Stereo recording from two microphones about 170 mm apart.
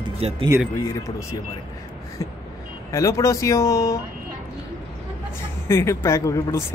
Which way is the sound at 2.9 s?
20° left (ahead or behind).